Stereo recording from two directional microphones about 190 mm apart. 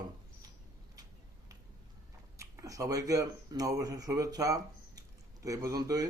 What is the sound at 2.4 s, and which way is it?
Speech, 15° right (ahead or behind).